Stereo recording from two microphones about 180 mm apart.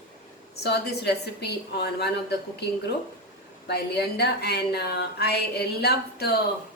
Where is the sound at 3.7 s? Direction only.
65° left (ahead or behind).